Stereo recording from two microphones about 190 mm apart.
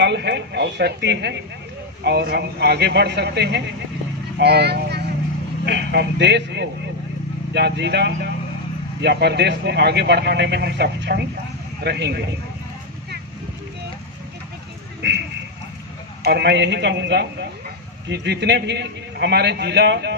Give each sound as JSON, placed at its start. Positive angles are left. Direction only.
{"t": 0.0, "sound": "a man's voice", "side_deg": -65}
{"t": 15.0, "sound": "a sound", "side_deg": -65}
{"t": 16.3, "sound": "a man's voice", "side_deg": -60}